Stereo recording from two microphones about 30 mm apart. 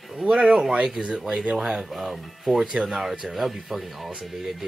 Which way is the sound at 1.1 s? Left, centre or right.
Centre.